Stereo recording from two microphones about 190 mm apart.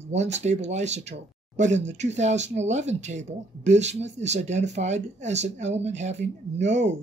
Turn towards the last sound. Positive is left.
turn(degrees=-35)  # may be behind; listen again after turning